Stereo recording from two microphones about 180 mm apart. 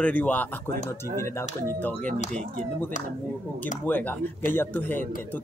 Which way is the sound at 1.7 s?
10° left (ahead or behind).